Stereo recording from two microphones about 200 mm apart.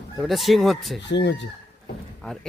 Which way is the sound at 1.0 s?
60° left (ahead or behind).